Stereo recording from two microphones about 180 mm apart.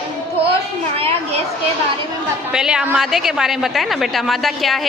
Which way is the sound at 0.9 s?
30° right (ahead or behind).